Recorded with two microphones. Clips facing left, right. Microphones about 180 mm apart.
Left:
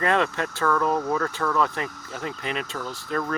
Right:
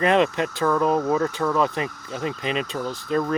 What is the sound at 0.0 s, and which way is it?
Speech, 20° right (ahead or behind).